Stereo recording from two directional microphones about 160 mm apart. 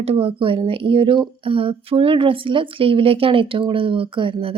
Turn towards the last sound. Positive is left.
turn(degrees=-35)  # may be behind; listen again after turning